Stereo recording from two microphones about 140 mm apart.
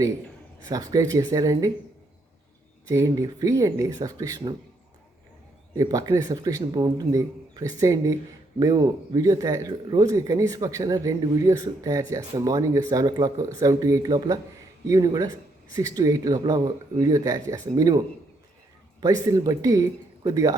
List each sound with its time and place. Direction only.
0.7 s speech: 25° right (ahead or behind)
2.8 s speech: 25° right (ahead or behind)
5.7 s speech: 25° right (ahead or behind)